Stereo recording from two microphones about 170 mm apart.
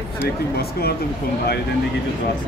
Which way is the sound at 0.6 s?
65° left (ahead or behind).